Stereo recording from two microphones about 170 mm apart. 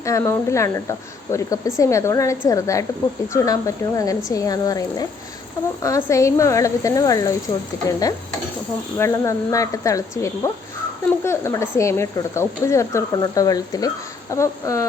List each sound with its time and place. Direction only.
0.0 s speech: 15° left (ahead or behind)